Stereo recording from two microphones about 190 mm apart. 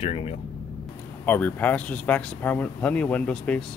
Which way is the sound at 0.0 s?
30° left (ahead or behind).